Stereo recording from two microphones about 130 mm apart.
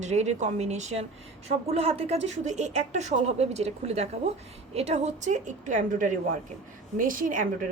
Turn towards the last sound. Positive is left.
turn(degrees=-90)